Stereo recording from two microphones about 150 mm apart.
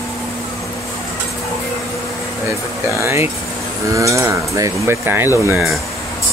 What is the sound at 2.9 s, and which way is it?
Speech, 20° right (ahead or behind).